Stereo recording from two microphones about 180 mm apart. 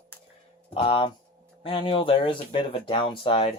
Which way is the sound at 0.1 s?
10° left (ahead or behind).